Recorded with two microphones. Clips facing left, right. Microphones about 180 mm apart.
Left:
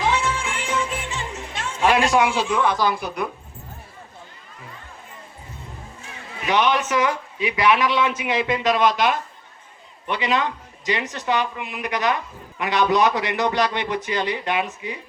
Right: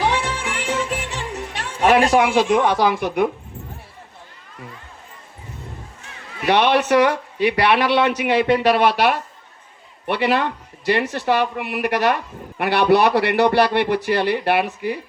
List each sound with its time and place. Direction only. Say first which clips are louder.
0.1 s music: even; 65° right (ahead or behind)
1.8 s speech: right 4 dB; 45° right (ahead or behind)
2.3 s speech: right 5 dB; 70° right (ahead or behind)
6.4 s speech: right 4 dB; 70° right (ahead or behind)